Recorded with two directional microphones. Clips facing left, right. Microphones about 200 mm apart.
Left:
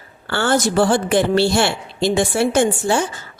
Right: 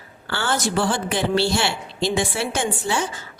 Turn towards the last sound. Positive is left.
turn(degrees=50)  # may be behind; listen again after turning